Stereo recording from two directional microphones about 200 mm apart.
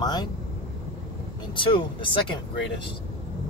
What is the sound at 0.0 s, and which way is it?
Speech, 20° left (ahead or behind).